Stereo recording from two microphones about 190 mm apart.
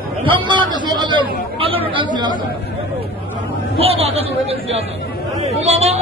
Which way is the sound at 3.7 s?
30° right (ahead or behind).